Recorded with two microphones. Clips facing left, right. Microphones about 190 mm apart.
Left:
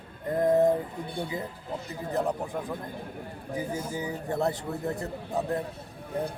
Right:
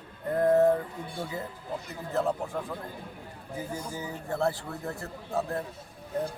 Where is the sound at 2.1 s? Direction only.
15° left (ahead or behind).